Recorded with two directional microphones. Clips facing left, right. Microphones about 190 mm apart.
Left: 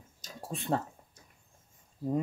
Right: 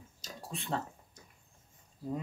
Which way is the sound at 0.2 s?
45° left (ahead or behind).